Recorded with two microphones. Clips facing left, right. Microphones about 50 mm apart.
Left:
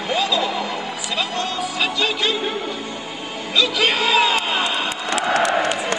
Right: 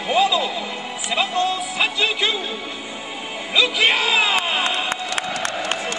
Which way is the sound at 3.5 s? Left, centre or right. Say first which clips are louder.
Right 1 dB; centre.